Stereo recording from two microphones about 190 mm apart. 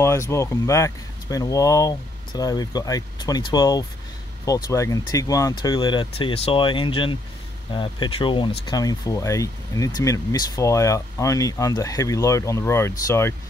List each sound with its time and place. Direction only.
0.0 s speech: 15° left (ahead or behind)